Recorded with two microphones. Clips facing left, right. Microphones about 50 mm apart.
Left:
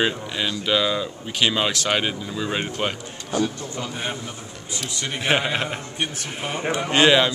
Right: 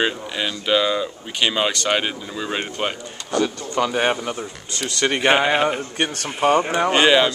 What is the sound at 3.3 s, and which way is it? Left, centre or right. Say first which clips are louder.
Speech: right 4 dB; right.